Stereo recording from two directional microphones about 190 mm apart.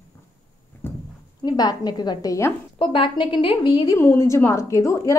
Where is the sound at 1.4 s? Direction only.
20° left (ahead or behind).